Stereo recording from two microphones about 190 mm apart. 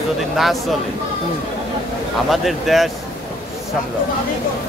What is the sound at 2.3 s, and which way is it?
Speech, centre (ahead or behind).